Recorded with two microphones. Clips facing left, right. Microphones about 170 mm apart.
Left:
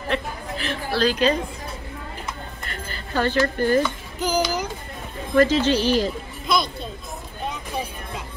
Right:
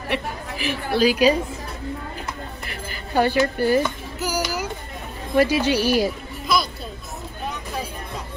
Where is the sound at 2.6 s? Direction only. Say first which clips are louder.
Right 1 dB; 10° right (ahead or behind).